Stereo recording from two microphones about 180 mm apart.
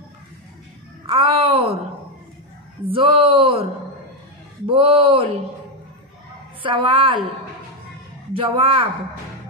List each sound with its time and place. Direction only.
1.0 s speech: 30° right (ahead or behind)
2.9 s speech: 30° right (ahead or behind)
4.6 s speech: 30° right (ahead or behind)
6.6 s speech: 30° right (ahead or behind)
8.3 s speech: 30° right (ahead or behind)